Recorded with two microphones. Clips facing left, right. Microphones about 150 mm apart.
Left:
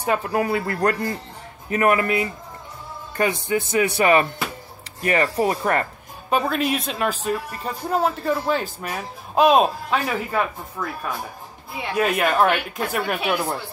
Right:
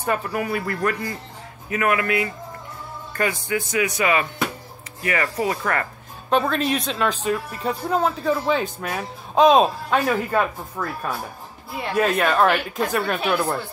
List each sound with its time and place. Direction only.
0.3 s speech: 30° left (ahead or behind)
6.3 s a woman's voice: 5° left (ahead or behind)